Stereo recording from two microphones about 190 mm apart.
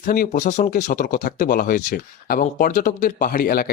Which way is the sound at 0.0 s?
50° left (ahead or behind).